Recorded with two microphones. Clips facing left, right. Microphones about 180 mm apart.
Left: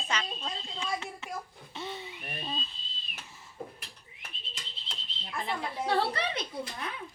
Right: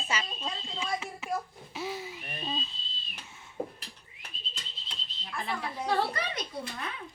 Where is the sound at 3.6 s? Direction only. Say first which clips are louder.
Right 6 dB; 60° right (ahead or behind).